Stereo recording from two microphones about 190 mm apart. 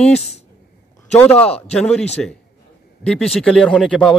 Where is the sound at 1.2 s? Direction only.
10° left (ahead or behind).